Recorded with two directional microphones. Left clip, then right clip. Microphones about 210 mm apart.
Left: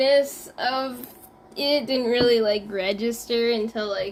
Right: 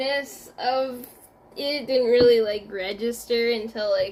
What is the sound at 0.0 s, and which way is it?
Speech, 55° left (ahead or behind).